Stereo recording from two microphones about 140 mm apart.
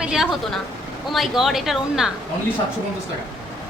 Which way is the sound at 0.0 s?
5° right (ahead or behind).